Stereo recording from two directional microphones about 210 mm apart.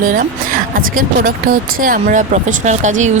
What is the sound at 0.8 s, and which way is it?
Speech, 40° right (ahead or behind).